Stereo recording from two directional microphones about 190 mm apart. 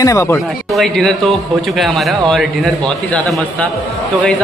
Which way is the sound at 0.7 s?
Centre (ahead or behind).